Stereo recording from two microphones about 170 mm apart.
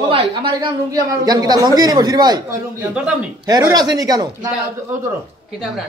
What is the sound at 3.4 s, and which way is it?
Speech, 20° right (ahead or behind).